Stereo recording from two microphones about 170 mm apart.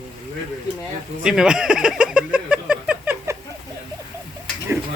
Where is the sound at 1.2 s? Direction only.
5° right (ahead or behind).